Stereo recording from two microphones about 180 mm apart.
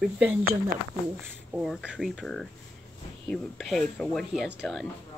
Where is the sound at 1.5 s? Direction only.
5° right (ahead or behind).